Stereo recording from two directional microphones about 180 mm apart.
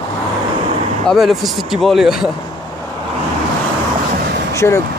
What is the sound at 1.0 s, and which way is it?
Speech, centre (ahead or behind).